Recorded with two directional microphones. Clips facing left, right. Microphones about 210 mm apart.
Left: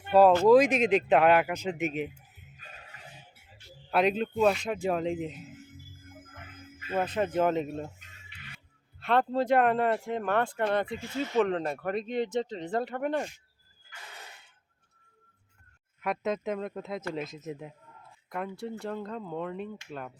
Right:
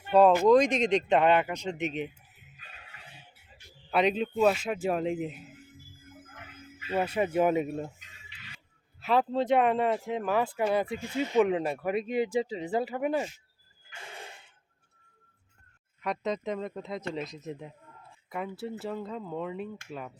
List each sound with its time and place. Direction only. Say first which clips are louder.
0.1 s speech: left 1 dB; 5° left (ahead or behind)
2.6 s goat: left 3 dB; 45° left (ahead or behind)
3.9 s speech: even; centre (ahead or behind)
6.1 s music: even; 50° left (ahead or behind)
6.9 s speech: right 1 dB; 10° right (ahead or behind)
7.9 s a sound: left 1 dB; 55° left (ahead or behind)
9.0 s speech: even; 5° right (ahead or behind)
13.9 s a sound: right 4 dB; 25° right (ahead or behind)
16.0 s speech: left 1 dB; 5° left (ahead or behind)